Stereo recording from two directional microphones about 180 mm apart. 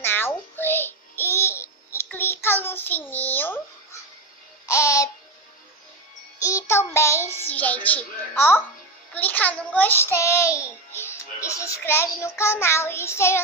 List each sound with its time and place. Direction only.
0.0 s babbling: 10° left (ahead or behind)
6.4 s child singing: 15° left (ahead or behind)
9.1 s a child's voice: 10° left (ahead or behind)